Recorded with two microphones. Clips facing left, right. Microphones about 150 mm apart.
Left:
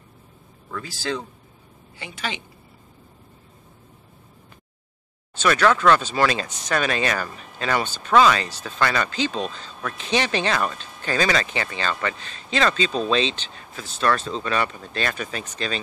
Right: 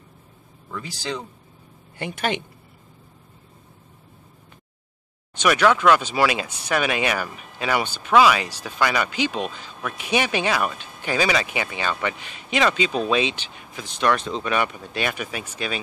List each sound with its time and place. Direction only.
0.7 s speech: 15° right (ahead or behind)
2.0 s a woman's voice: 55° right (ahead or behind)
5.4 s speech: 10° right (ahead or behind)